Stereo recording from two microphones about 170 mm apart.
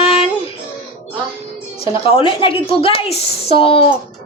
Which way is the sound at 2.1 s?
30° left (ahead or behind).